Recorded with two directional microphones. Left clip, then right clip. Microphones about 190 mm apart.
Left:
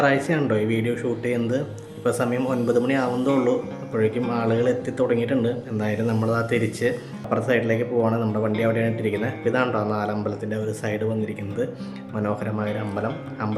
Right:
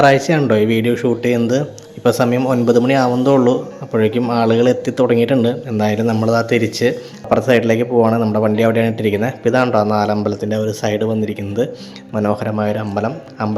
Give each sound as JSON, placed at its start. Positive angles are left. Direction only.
{"t": 0.0, "sound": "speech", "side_deg": -30}